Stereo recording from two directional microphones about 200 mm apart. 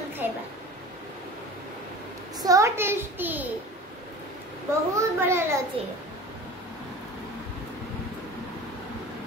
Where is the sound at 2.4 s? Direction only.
15° right (ahead or behind).